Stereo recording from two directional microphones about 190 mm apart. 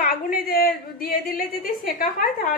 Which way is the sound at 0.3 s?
50° left (ahead or behind).